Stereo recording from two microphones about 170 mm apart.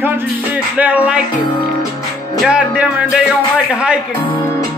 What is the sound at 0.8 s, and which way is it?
Music, 10° right (ahead or behind).